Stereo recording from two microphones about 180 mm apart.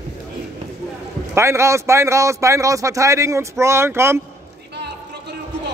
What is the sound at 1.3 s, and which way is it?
A man's voice, 15° right (ahead or behind).